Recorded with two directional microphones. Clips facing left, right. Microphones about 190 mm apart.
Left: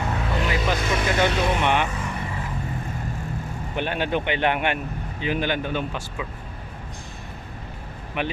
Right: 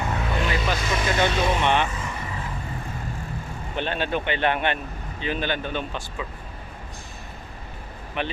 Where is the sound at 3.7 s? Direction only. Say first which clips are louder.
Left 1 dB; 15° left (ahead or behind).